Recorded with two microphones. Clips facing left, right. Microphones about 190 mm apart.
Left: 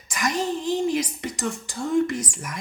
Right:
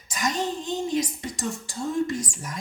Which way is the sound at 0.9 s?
75° left (ahead or behind).